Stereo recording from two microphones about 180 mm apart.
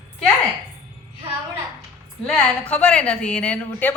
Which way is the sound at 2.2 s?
5° left (ahead or behind).